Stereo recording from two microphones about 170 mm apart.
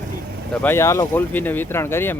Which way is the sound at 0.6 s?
15° left (ahead or behind).